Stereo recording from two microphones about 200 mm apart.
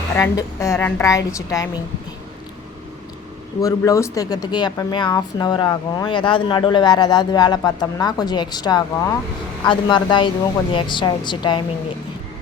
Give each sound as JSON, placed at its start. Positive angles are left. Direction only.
{"t": 0.2, "sound": "a woman's voice", "side_deg": 15}
{"t": 3.6, "sound": "speech", "side_deg": 15}